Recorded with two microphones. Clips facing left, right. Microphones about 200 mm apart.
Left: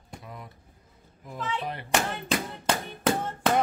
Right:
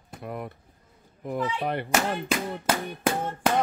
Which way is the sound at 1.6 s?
65° right (ahead or behind).